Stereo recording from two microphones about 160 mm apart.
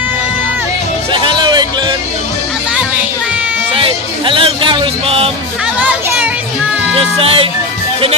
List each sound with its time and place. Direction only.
1.1 s music: 30° right (ahead or behind)
3.7 s music: 35° right (ahead or behind)
5.8 s music: 10° right (ahead or behind)
7.0 s music: 35° right (ahead or behind)